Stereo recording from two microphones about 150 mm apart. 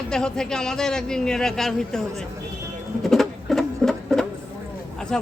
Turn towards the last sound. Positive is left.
turn(degrees=5)  # may be behind; listen again after turning